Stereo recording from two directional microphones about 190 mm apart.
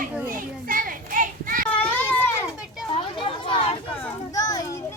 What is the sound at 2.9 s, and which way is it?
Chatter, 25° left (ahead or behind).